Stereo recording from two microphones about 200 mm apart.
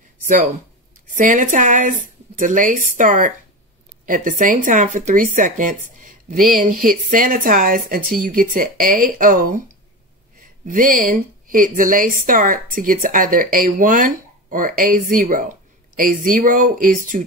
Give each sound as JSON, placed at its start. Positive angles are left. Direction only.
{"t": 1.1, "sound": "speech", "side_deg": -40}
{"t": 10.7, "sound": "speech", "side_deg": -45}